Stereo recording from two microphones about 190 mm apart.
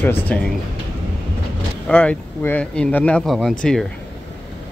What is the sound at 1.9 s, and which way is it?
Speech, 10° left (ahead or behind).